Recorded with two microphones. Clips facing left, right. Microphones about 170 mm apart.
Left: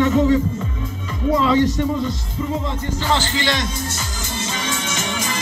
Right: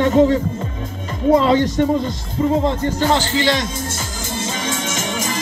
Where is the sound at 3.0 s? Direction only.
45° right (ahead or behind).